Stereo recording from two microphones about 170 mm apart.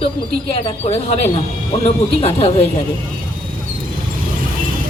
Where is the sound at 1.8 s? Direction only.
35° left (ahead or behind).